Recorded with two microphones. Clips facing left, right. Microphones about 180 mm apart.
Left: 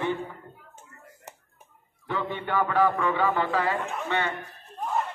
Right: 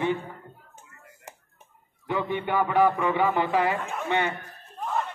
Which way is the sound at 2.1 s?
15° right (ahead or behind).